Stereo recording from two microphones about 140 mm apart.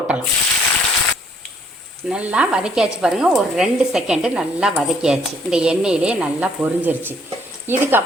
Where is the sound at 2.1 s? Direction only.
5° right (ahead or behind).